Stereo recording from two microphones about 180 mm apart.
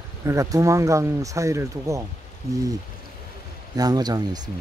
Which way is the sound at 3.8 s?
20° right (ahead or behind).